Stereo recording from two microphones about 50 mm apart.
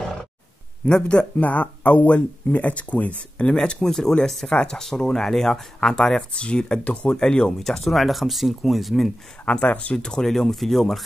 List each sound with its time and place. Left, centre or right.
0.8 s speech: centre
1.4 s speech: left
3.5 s speech: centre
7.1 s speech: centre
7.6 s speech: centre
9.4 s speech: left
9.9 s speech: centre